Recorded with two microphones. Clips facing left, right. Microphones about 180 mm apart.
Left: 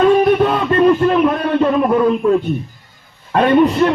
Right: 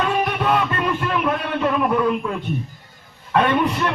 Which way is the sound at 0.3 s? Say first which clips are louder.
Left 7 dB; 35° left (ahead or behind).